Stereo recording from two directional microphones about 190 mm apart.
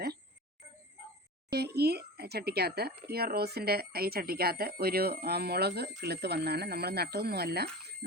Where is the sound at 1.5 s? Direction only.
60° right (ahead or behind).